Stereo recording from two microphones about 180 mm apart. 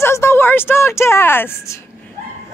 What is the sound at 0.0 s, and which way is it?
A woman's voice, 15° left (ahead or behind).